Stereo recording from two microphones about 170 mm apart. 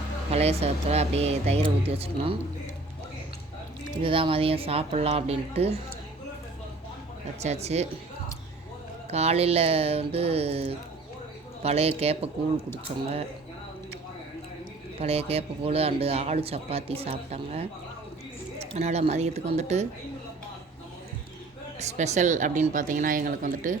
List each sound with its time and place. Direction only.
0.3 s speech: 35° right (ahead or behind)
4.0 s speech: 30° right (ahead or behind)
7.3 s speech: 40° right (ahead or behind)
9.0 s speech: 40° right (ahead or behind)
14.9 s speech: 35° right (ahead or behind)
21.8 s speech: 40° right (ahead or behind)